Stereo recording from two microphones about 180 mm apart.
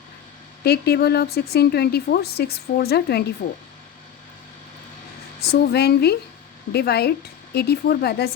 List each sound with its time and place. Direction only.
0.6 s a woman's voice: 65° left (ahead or behind)
5.4 s a woman's voice: 65° left (ahead or behind)